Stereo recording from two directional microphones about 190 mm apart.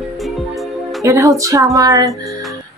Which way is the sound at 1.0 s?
15° right (ahead or behind).